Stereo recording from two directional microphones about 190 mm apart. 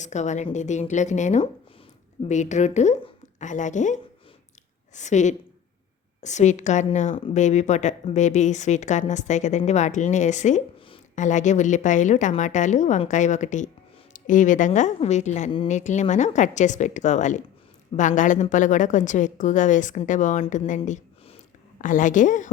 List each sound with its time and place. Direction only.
0.0 s a woman's voice: 40° left (ahead or behind)